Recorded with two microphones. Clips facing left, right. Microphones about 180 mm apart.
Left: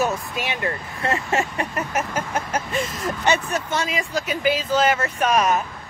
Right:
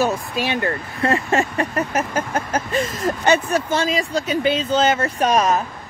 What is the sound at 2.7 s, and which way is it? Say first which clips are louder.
Speech: right 4 dB; centre (ahead or behind).